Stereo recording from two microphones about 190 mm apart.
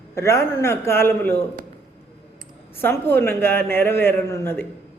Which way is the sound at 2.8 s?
10° left (ahead or behind).